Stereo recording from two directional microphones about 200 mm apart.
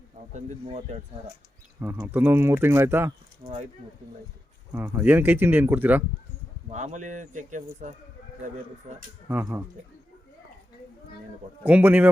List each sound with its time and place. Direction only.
0.3 s speech: 35° right (ahead or behind)
1.8 s speech: 10° right (ahead or behind)
3.4 s speech: 30° right (ahead or behind)
4.7 s speech: 10° right (ahead or behind)
6.7 s speech: 35° right (ahead or behind)
9.3 s speech: 15° right (ahead or behind)
11.6 s speech: 10° right (ahead or behind)